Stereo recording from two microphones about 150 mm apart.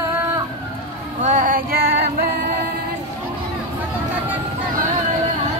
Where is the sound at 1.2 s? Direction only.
65° right (ahead or behind).